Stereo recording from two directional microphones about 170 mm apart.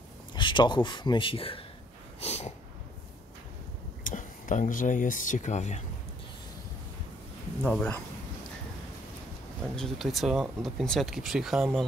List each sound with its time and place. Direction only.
0.3 s speech: 25° left (ahead or behind)
2.1 s snort: 40° left (ahead or behind)
4.0 s speech: 50° left (ahead or behind)
7.6 s speech: 10° left (ahead or behind)
9.8 s speech: centre (ahead or behind)